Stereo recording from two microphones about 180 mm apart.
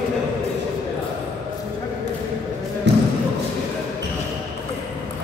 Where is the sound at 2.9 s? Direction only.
70° right (ahead or behind).